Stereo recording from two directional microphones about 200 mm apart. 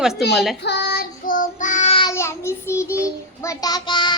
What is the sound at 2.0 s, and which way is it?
Child singing, 15° left (ahead or behind).